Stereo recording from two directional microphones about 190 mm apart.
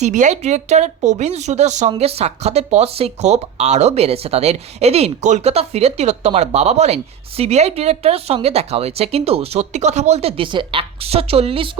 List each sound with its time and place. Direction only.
0.0 s speech: 40° right (ahead or behind)